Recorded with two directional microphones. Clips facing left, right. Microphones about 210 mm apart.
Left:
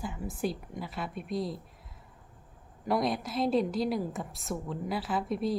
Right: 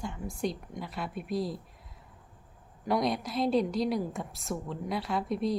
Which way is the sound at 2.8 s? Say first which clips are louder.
Even; centre (ahead or behind).